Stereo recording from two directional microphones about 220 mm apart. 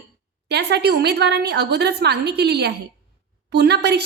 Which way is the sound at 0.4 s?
50° right (ahead or behind).